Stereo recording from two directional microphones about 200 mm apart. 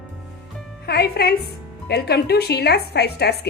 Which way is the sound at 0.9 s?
55° left (ahead or behind).